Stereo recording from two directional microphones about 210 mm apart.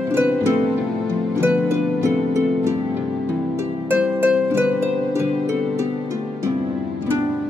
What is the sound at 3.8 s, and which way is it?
Harp, 10° right (ahead or behind).